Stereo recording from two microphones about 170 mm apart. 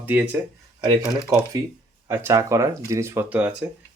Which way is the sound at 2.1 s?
15° right (ahead or behind).